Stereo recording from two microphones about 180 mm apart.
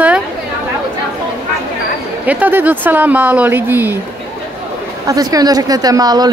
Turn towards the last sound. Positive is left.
turn(degrees=-20)  # may be behind; listen again after turning